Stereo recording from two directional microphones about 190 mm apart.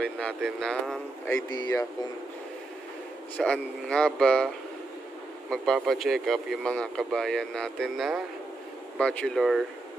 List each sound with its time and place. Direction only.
0.0 s speech: 5° left (ahead or behind)
1.5 s speech: 20° left (ahead or behind)
3.3 s speech: 5° left (ahead or behind)
5.5 s speech: centre (ahead or behind)